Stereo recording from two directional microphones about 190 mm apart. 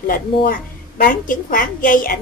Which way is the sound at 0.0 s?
45° left (ahead or behind).